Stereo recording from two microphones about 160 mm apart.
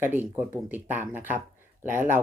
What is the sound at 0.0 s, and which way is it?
Speech, 10° right (ahead or behind).